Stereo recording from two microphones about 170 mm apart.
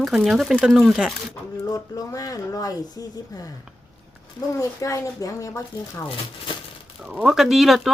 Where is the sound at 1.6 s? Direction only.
20° left (ahead or behind).